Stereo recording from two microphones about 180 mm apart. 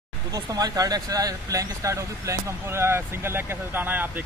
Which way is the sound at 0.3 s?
20° right (ahead or behind).